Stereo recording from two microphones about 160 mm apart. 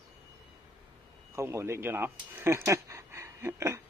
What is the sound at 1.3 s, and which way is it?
Speech, 15° right (ahead or behind).